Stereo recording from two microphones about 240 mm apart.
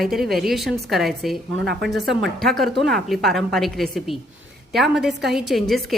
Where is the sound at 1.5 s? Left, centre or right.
Right.